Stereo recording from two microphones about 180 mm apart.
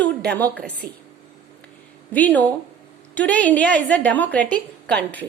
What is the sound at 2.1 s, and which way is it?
A woman's voice, 10° left (ahead or behind).